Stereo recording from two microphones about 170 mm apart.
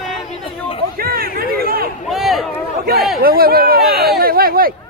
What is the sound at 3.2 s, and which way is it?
Speech, 60° right (ahead or behind).